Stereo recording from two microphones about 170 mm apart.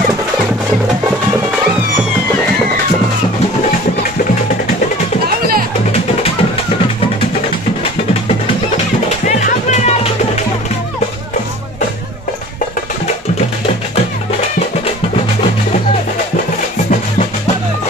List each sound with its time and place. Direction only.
9.2 s music: 50° left (ahead or behind)